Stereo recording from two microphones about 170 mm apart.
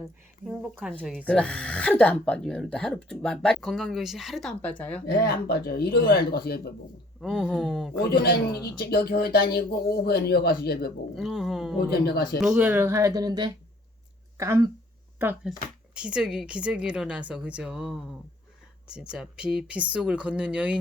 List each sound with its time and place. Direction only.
0.9 s a woman's voice: 5° left (ahead or behind)
5.0 s speech: 70° left (ahead or behind)
7.2 s a woman's voice: 5° right (ahead or behind)
8.1 s speech: 65° left (ahead or behind)
11.1 s a woman's voice: centre (ahead or behind)
11.9 s speech: 65° left (ahead or behind)
12.4 s speech: 5° right (ahead or behind)
16.0 s a woman's voice: 5° right (ahead or behind)